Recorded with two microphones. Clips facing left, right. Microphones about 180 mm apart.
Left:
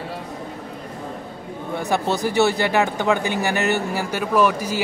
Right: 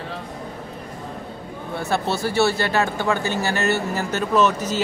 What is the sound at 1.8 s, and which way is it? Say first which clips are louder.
Speech: left 1 dB; 15° left (ahead or behind).